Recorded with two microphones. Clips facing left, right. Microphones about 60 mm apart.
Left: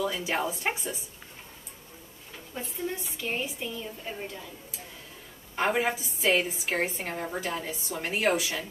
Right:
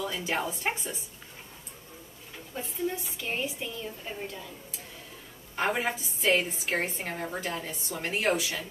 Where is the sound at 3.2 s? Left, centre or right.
Centre.